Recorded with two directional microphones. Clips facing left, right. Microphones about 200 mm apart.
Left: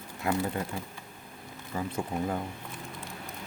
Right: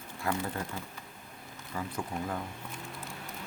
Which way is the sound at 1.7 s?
25° left (ahead or behind).